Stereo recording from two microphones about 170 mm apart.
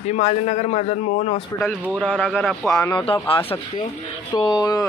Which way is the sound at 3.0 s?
30° left (ahead or behind).